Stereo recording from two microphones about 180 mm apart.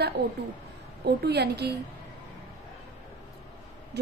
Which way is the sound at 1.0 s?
65° right (ahead or behind).